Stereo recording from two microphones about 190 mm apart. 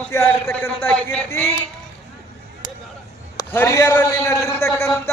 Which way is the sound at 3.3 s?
15° left (ahead or behind).